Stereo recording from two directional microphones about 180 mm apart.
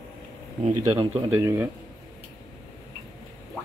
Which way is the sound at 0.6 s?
35° right (ahead or behind).